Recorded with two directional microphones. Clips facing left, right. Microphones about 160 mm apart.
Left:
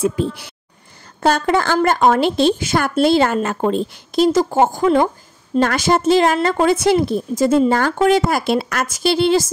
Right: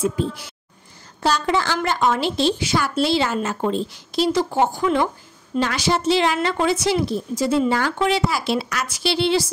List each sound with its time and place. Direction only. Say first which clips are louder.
0.0 s speech: left 3 dB; 65° left (ahead or behind)
1.2 s speech: left 4 dB; 50° left (ahead or behind)